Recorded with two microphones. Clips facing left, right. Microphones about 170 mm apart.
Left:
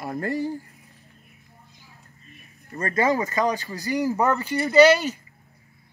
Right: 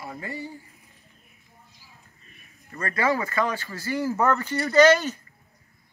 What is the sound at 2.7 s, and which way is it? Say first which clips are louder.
Speech: left 3 dB; 25° left (ahead or behind).